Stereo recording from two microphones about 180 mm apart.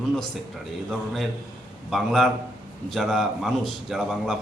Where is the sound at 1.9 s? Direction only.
Centre (ahead or behind).